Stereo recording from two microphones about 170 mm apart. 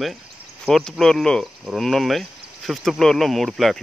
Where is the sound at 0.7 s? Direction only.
Centre (ahead or behind).